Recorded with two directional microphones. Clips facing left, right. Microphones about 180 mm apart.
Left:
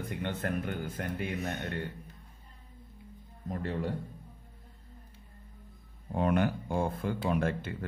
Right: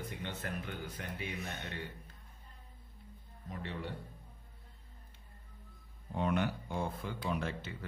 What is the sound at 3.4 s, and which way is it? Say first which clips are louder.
Speech: left 8 dB; 45° left (ahead or behind).